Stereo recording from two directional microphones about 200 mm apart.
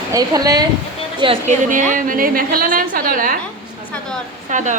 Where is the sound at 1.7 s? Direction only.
40° right (ahead or behind).